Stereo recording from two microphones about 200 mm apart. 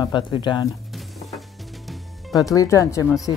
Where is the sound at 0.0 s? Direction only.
25° left (ahead or behind).